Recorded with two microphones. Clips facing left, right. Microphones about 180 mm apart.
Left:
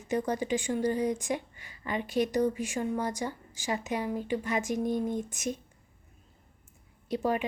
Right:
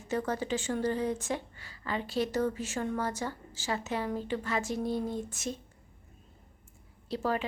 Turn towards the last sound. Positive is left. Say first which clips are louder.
# left 2 dB
turn(degrees=15)  # may be behind; listen again after turning